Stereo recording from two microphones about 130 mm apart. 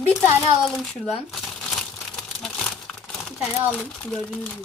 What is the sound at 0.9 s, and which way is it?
Crumpling, centre (ahead or behind).